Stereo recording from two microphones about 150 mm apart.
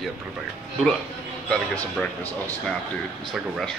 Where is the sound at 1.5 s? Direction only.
10° left (ahead or behind).